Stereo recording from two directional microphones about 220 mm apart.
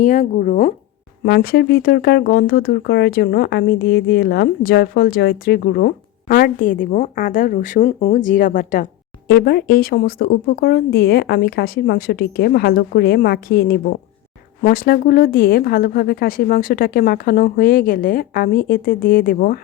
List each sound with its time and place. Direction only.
0.0 s speech: 35° left (ahead or behind)